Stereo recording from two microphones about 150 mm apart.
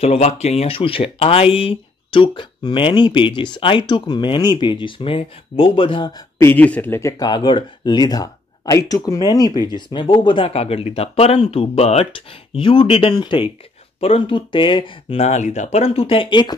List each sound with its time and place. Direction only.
0.0 s speech: 45° left (ahead or behind)
6.3 s speech: 15° left (ahead or behind); by 16.5 s 30° left (ahead or behind)